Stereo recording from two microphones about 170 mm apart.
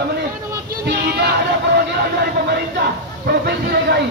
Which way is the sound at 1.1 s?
70° right (ahead or behind).